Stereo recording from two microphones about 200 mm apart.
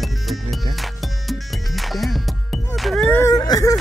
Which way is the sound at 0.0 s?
Centre (ahead or behind).